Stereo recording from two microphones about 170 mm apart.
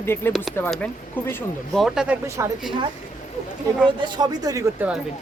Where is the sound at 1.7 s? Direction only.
5° right (ahead or behind).